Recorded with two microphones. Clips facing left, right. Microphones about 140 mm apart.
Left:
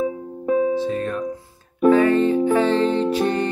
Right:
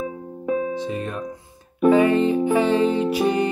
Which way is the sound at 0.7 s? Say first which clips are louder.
Left 4 dB; 15° right (ahead or behind).